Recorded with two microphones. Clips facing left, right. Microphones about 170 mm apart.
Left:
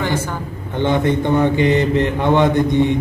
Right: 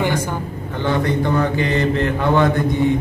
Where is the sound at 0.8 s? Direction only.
20° left (ahead or behind).